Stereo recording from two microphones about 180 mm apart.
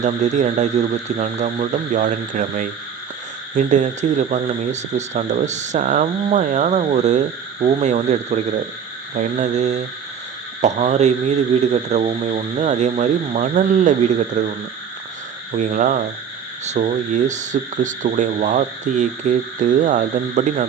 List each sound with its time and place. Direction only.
0.0 s speech: 40° right (ahead or behind)
15.5 s speech: 45° right (ahead or behind)